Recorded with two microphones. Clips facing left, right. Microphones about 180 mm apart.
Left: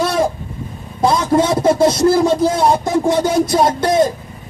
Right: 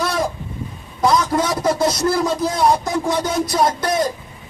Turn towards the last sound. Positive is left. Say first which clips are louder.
# left 5 dB
turn(degrees=25)  # may be behind; listen again after turning